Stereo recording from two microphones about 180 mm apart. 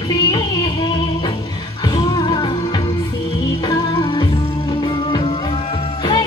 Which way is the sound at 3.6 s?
25° left (ahead or behind).